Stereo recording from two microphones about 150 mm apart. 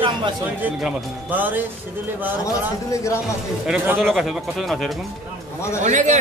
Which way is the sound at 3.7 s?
5° right (ahead or behind).